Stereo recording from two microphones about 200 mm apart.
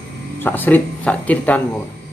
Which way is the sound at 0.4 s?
10° left (ahead or behind).